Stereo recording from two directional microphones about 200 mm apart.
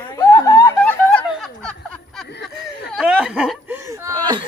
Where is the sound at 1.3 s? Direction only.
Centre (ahead or behind).